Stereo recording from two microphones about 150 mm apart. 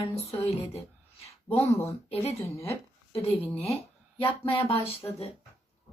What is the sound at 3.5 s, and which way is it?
A woman's voice, 45° left (ahead or behind).